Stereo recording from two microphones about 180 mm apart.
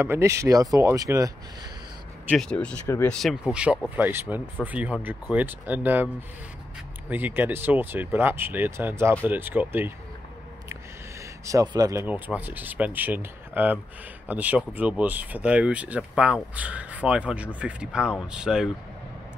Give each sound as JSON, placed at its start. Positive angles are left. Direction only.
{"t": 0.0, "sound": "speech", "side_deg": -15}
{"t": 2.3, "sound": "speech", "side_deg": 5}
{"t": 7.1, "sound": "speech", "side_deg": -10}
{"t": 11.4, "sound": "speech", "side_deg": -20}